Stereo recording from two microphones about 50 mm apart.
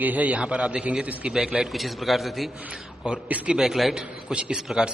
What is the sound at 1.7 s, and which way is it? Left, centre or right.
Speech, centre.